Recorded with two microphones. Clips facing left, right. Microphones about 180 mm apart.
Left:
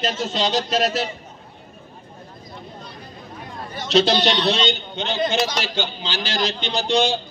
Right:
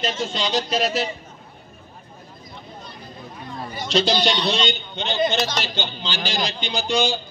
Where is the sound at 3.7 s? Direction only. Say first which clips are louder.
Left 3 dB; centre (ahead or behind).